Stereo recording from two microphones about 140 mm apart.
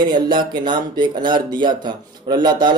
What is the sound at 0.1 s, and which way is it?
Speech, 35° right (ahead or behind).